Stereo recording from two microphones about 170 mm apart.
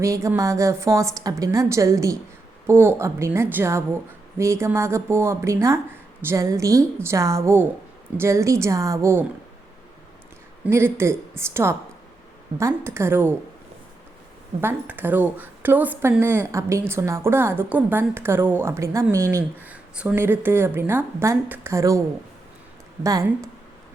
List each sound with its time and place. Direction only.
0.0 s speech: 15° right (ahead or behind)
10.7 s speech: 15° right (ahead or behind)
14.6 s speech: 10° right (ahead or behind)
23.0 s speech: 20° right (ahead or behind)